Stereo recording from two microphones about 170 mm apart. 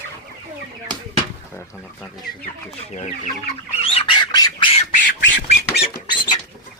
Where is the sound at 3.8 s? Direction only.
35° left (ahead or behind).